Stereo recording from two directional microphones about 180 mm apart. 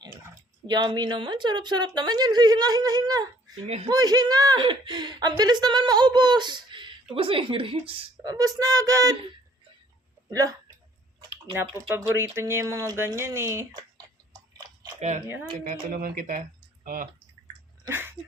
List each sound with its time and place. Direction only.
0.7 s a woman's voice: 25° right (ahead or behind)
8.3 s a woman's voice: 20° right (ahead or behind)
10.2 s speech: 20° right (ahead or behind)
11.2 s a sound: 25° right (ahead or behind)
11.5 s speech: 10° right (ahead or behind)
15.6 s speech: 50° right (ahead or behind)
17.8 s dog: 10° right (ahead or behind)